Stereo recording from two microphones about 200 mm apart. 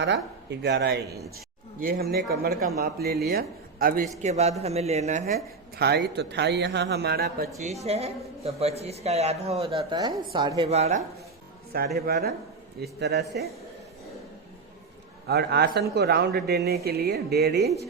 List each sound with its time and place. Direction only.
0.0 s a man's voice: 60° right (ahead or behind); by 4.1 s 45° right (ahead or behind)
4.2 s speech: 35° right (ahead or behind)
5.7 s a man's voice: 55° right (ahead or behind)
7.9 s a woman's voice: 30° right (ahead or behind)
11.9 s a man's voice: 50° right (ahead or behind)
15.3 s a man's voice: 55° right (ahead or behind)